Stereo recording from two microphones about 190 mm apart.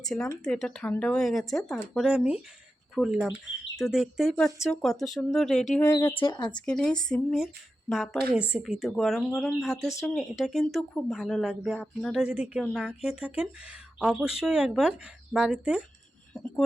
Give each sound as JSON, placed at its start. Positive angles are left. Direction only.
{"t": 0.1, "sound": "speech", "side_deg": 5}
{"t": 6.1, "sound": "speech", "side_deg": 25}
{"t": 6.7, "sound": "speech", "side_deg": 5}
{"t": 16.3, "sound": "speech", "side_deg": 5}